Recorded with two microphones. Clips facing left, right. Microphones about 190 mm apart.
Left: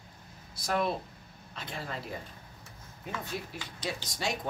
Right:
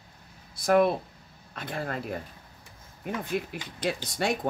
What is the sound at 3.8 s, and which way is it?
Speech, 55° right (ahead or behind).